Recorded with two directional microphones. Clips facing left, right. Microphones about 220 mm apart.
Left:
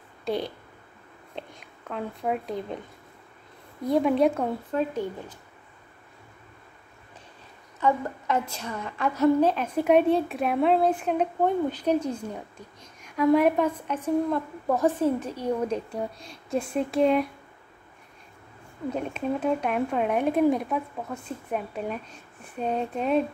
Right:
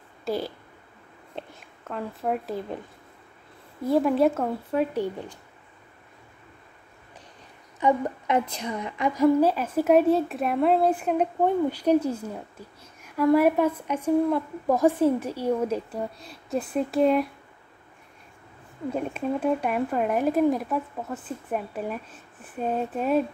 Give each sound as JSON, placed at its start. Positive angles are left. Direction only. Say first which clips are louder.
{"t": 0.2, "sound": "a sound", "louder": "even", "side_deg": -5}
{"t": 1.3, "sound": "speech", "louder": "right 1 dB", "side_deg": -5}
{"t": 3.8, "sound": "speech", "louder": "right 1 dB", "side_deg": -5}
{"t": 7.8, "sound": "a woman's voice", "louder": "right 2 dB", "side_deg": -20}
{"t": 18.9, "sound": "speech", "louder": "right 1 dB", "side_deg": -5}